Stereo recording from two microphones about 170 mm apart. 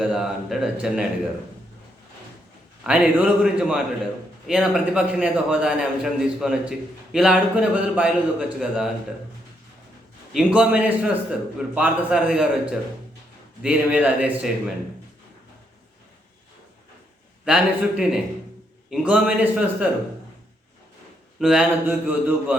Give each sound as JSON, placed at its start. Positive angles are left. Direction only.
{"t": 0.0, "sound": "a man's voice", "side_deg": 0}
{"t": 2.8, "sound": "a man's voice", "side_deg": -5}
{"t": 10.3, "sound": "a man's voice", "side_deg": -5}
{"t": 13.6, "sound": "a man's voice", "side_deg": -5}
{"t": 17.4, "sound": "a man's voice", "side_deg": -5}
{"t": 21.3, "sound": "a man's voice", "side_deg": -5}